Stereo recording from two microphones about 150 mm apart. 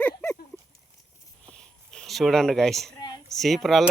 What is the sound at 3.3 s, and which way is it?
Speech, centre (ahead or behind).